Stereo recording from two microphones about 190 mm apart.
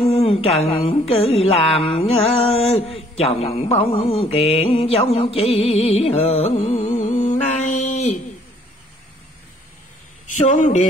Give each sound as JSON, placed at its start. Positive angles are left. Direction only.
{"t": 0.0, "sound": "mantra", "side_deg": 30}
{"t": 10.5, "sound": "mantra", "side_deg": 40}